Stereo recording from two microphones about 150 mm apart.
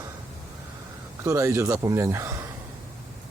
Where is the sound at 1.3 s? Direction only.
20° right (ahead or behind).